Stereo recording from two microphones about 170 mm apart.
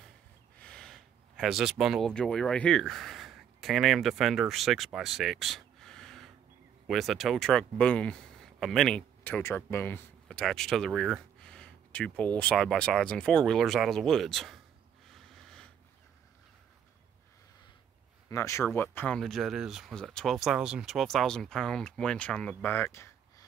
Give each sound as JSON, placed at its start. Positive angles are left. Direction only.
{"t": 0.6, "sound": "speech", "side_deg": 5}
{"t": 15.0, "sound": "snort", "side_deg": 0}
{"t": 18.3, "sound": "speech", "side_deg": 15}